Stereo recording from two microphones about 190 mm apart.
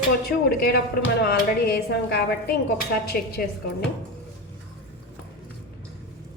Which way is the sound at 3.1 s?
55° left (ahead or behind).